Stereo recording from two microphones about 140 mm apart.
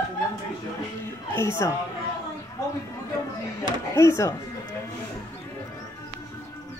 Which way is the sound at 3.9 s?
20° left (ahead or behind).